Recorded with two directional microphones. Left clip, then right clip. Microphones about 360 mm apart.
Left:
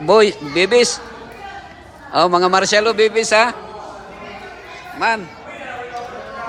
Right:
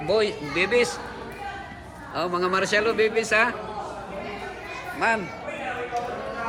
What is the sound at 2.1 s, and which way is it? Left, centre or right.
A man's voice, centre.